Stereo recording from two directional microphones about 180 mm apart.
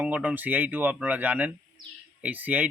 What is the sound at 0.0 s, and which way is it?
Speech, 10° right (ahead or behind).